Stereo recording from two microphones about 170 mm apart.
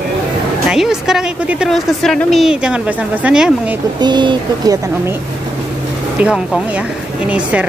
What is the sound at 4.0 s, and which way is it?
Speech, 25° right (ahead or behind).